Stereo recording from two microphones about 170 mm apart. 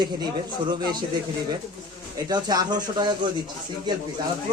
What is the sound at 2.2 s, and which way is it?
Speech, 25° right (ahead or behind).